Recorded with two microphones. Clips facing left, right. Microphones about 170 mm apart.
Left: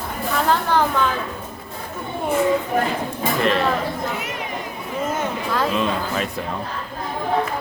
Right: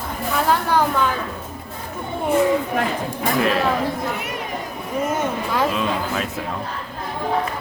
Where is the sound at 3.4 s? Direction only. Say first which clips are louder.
Left 2 dB; 5° right (ahead or behind).